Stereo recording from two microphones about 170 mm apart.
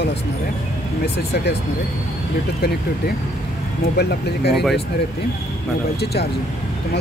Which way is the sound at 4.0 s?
75° left (ahead or behind).